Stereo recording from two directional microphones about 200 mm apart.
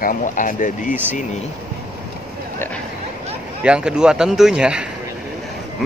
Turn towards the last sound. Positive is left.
turn(degrees=-5)  # may be behind; listen again after turning